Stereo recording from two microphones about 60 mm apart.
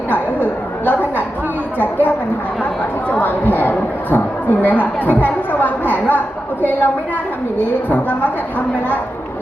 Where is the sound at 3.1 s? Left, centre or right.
Left.